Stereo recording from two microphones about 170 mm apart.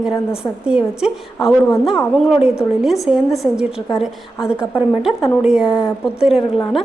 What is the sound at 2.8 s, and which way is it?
A woman's voice, centre (ahead or behind).